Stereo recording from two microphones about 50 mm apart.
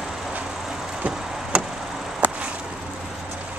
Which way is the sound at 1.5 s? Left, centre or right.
Right.